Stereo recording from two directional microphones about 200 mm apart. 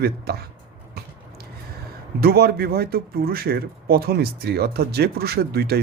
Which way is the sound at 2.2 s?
50° right (ahead or behind).